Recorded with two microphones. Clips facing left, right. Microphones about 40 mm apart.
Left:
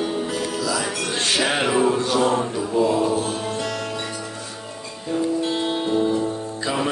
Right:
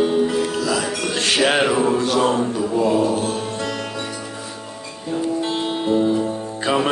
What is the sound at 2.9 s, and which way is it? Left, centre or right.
Music, right.